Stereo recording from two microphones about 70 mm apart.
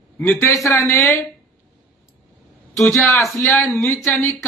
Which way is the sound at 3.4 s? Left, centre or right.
Left.